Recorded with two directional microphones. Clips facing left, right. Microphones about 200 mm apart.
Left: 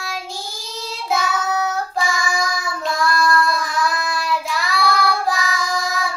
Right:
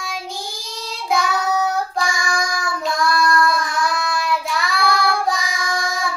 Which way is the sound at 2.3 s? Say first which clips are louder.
Even; centre (ahead or behind).